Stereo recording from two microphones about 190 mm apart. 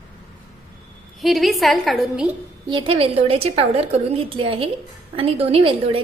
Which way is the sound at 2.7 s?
25° right (ahead or behind).